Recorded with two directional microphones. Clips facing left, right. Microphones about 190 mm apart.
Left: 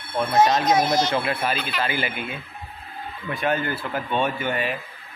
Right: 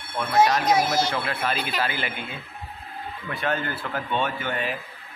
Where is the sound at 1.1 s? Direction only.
20° left (ahead or behind).